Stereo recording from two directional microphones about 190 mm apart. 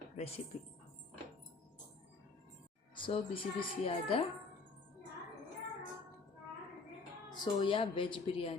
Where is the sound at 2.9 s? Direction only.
25° left (ahead or behind).